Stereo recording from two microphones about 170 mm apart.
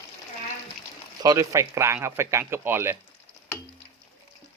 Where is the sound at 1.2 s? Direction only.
20° right (ahead or behind).